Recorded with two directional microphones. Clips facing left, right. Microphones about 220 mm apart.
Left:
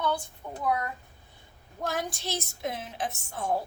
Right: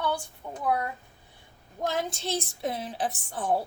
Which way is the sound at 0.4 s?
10° right (ahead or behind).